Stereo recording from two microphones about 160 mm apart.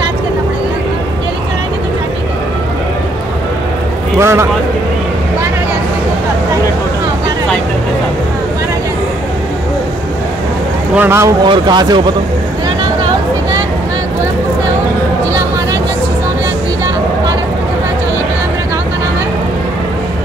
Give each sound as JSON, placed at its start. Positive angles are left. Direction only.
{"t": 4.2, "sound": "speech", "side_deg": -15}
{"t": 11.0, "sound": "speech", "side_deg": -15}
{"t": 11.4, "sound": "speech", "side_deg": -30}